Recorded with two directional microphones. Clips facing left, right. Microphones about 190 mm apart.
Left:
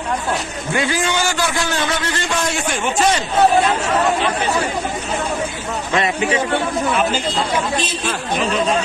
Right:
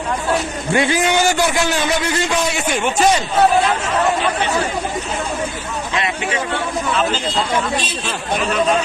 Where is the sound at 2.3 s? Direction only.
Centre (ahead or behind).